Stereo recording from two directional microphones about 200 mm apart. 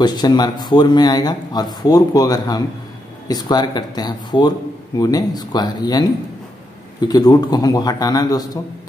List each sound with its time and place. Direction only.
0.0 s speech: 20° left (ahead or behind)